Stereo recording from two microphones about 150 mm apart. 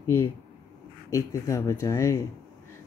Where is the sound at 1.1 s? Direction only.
20° left (ahead or behind).